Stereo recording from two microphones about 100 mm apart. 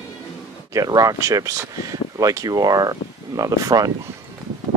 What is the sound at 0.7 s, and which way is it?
Speech, 40° right (ahead or behind).